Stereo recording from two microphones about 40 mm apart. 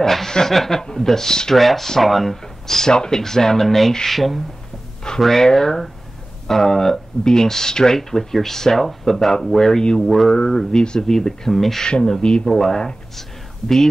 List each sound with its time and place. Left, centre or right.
0.0 s speech: centre
1.6 s speech: centre
2.9 s speech: centre
10.3 s speech: centre